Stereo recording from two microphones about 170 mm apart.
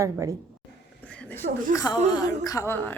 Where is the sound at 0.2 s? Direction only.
20° right (ahead or behind).